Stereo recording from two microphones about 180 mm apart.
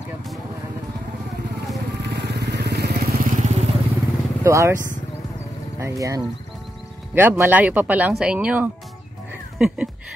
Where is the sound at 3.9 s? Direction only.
15° right (ahead or behind).